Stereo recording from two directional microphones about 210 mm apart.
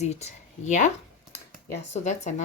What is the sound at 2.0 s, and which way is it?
Speech, 35° left (ahead or behind).